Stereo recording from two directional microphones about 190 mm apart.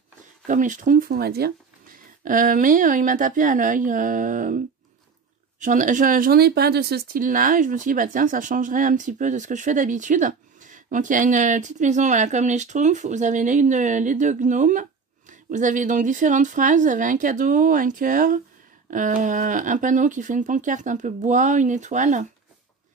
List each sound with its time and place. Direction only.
0.5 s speech: 40° right (ahead or behind)